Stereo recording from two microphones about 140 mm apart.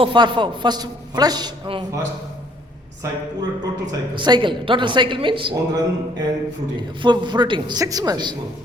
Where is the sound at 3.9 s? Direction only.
30° right (ahead or behind).